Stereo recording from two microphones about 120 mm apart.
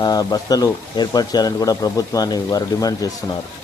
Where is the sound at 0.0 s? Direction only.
30° left (ahead or behind).